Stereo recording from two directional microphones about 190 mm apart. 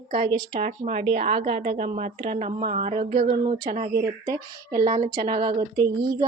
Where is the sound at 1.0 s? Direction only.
30° right (ahead or behind).